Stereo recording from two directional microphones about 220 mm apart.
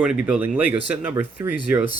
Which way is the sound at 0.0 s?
5° right (ahead or behind).